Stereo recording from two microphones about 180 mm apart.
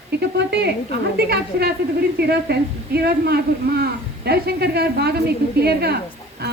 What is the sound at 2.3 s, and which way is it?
A woman's voice, 65° right (ahead or behind).